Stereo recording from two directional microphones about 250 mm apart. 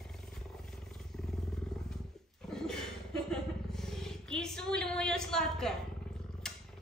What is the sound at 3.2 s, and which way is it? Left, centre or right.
Roar, centre.